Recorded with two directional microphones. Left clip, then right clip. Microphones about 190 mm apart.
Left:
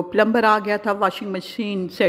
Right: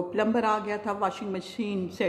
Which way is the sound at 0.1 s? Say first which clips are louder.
Left 10 dB; 25° left (ahead or behind).